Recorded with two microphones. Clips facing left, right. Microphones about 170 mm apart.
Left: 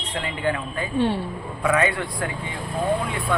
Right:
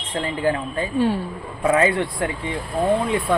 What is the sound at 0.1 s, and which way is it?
Speech, 35° right (ahead or behind).